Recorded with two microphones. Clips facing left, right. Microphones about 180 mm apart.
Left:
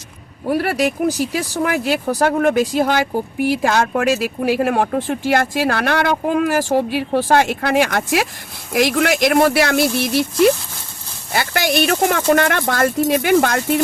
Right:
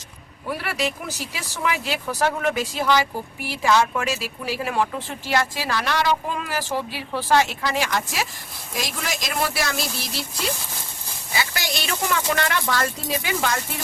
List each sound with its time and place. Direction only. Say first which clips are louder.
0.4 s speech: left 9 dB; 45° left (ahead or behind); by 13.8 s 60° left (ahead or behind)